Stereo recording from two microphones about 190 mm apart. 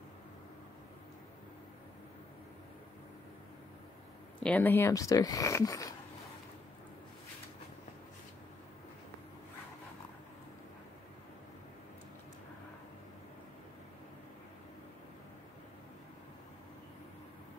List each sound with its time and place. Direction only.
4.4 s speech: 10° left (ahead or behind)